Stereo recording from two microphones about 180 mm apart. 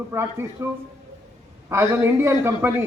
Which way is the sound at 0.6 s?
15° right (ahead or behind).